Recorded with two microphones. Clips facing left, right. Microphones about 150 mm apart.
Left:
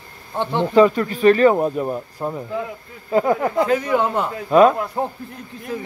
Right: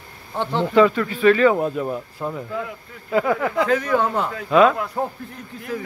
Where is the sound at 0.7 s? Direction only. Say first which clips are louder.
Left 2 dB; 40° left (ahead or behind).